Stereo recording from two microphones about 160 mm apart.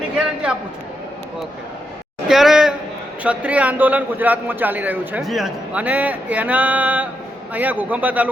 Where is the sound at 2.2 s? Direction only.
Centre (ahead or behind).